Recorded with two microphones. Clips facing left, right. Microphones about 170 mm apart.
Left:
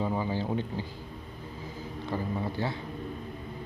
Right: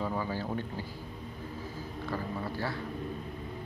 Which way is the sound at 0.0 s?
20° left (ahead or behind).